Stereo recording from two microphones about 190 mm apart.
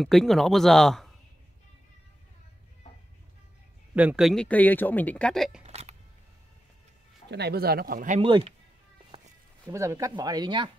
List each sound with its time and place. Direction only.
0.0 s speech: centre (ahead or behind)
3.9 s speech: 5° right (ahead or behind)
5.7 s a sound: 35° right (ahead or behind)
7.2 s speech: 60° right (ahead or behind)
8.2 s speech: 30° right (ahead or behind)
9.7 s speech: 15° right (ahead or behind)